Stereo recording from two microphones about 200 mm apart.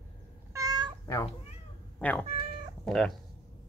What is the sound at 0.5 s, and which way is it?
Cat, 20° right (ahead or behind).